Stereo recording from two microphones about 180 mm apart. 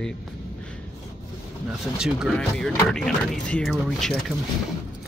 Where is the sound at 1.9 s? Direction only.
Centre (ahead or behind).